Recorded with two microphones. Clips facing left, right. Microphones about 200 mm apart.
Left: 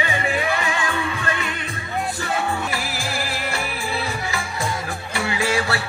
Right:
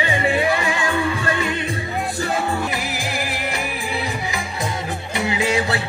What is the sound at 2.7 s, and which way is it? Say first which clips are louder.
Music: right 2 dB; 20° right (ahead or behind).